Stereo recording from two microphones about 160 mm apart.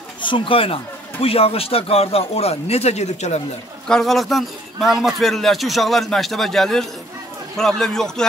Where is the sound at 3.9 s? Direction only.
Centre (ahead or behind).